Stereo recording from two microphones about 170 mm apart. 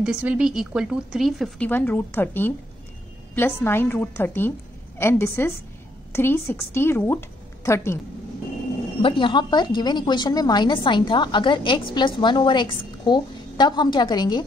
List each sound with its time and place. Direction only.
0.0 s a woman's voice: 5° right (ahead or behind)
1.7 s a woman's voice: 10° left (ahead or behind)
9.0 s a woman's voice: 30° left (ahead or behind)